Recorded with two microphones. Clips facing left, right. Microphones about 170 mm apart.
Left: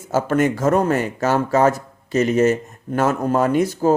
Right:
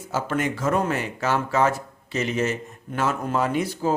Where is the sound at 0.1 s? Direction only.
45° left (ahead or behind).